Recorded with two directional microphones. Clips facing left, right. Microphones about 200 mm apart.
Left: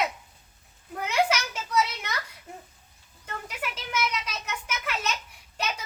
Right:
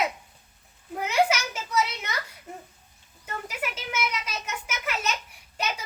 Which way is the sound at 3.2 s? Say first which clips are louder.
Right 2 dB; 5° right (ahead or behind).